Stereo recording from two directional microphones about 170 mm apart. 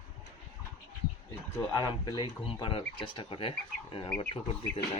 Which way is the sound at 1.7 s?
25° left (ahead or behind).